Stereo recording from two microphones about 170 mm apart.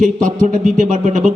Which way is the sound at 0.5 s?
50° right (ahead or behind).